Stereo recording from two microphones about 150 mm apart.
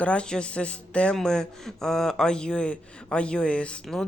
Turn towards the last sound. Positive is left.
turn(degrees=5)  # may be behind; listen again after turning